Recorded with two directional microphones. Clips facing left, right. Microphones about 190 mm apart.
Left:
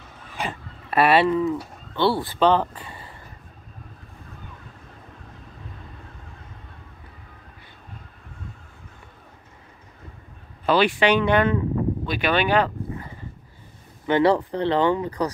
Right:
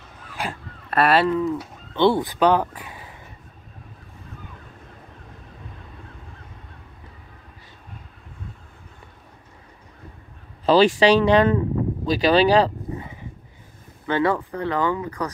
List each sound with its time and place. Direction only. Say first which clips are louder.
0.4 s speech: even; centre (ahead or behind)
2.0 s speech: right 3 dB; 20° right (ahead or behind)
10.6 s speech: right 4 dB; 35° right (ahead or behind)
14.0 s speech: left 3 dB; 20° left (ahead or behind)